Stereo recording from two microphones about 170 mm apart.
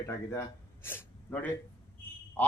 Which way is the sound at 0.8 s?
10° left (ahead or behind).